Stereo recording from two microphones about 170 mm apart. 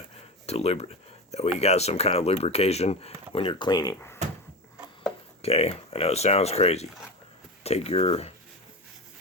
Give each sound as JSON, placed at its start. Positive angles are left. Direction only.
{"t": 0.4, "sound": "speech", "side_deg": 40}
{"t": 5.4, "sound": "speech", "side_deg": 35}